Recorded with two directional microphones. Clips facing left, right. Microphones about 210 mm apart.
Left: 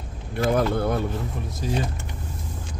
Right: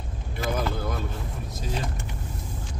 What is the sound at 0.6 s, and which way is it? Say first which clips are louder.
Speech: left 7 dB; 60° left (ahead or behind).